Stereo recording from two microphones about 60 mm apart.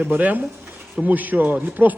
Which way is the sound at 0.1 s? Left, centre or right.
Right.